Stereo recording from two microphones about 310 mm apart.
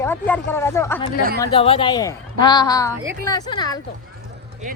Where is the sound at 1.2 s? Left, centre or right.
Right.